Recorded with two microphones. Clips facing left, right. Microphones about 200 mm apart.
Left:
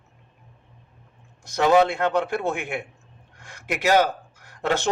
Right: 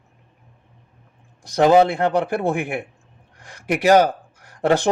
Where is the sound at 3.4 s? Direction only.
35° right (ahead or behind).